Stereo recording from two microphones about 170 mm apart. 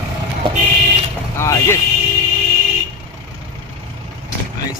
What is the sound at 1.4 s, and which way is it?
Speech, 15° left (ahead or behind).